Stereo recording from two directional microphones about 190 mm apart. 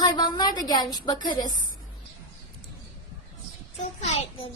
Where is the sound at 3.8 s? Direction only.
35° left (ahead or behind).